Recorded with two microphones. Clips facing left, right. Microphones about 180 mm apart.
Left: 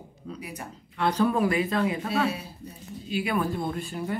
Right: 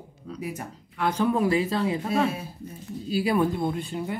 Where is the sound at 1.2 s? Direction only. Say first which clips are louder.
Right 3 dB; 20° right (ahead or behind).